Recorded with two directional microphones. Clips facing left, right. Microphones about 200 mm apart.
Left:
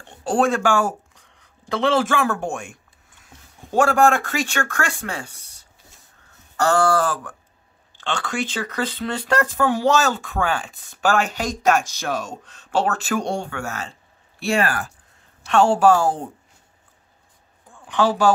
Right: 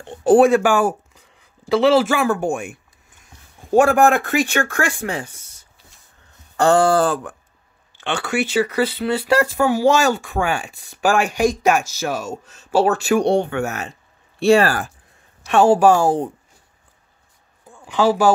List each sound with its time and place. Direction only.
0.2 s speech: 15° right (ahead or behind)
1.1 s a sound: 5° right (ahead or behind)
3.7 s speech: 15° right (ahead or behind)
5.4 s a sound: 15° left (ahead or behind)
6.5 s speech: 25° right (ahead or behind); by 13.2 s 5° right (ahead or behind)
13.3 s speech: 20° right (ahead or behind)
14.4 s speech: 35° right (ahead or behind)
15.4 s speech: 15° right (ahead or behind)
17.8 s speech: 10° right (ahead or behind)